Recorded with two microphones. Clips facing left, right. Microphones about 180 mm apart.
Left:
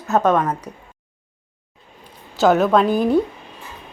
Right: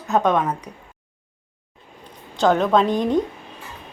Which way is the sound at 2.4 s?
5° left (ahead or behind).